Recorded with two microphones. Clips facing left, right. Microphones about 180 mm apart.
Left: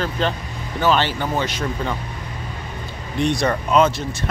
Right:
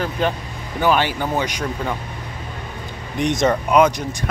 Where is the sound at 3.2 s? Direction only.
20° right (ahead or behind).